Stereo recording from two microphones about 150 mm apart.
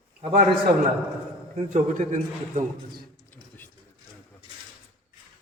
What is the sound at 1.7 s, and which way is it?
Speech, 55° right (ahead or behind).